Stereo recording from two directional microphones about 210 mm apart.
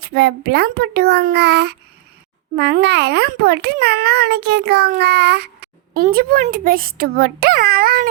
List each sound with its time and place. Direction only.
0.0 s a child's voice: 50° right (ahead or behind)